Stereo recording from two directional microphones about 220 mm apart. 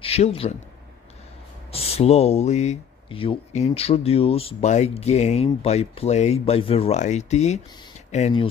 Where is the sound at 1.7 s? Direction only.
25° left (ahead or behind).